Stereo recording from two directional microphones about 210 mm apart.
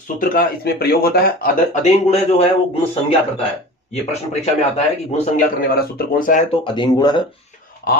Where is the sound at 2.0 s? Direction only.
30° left (ahead or behind).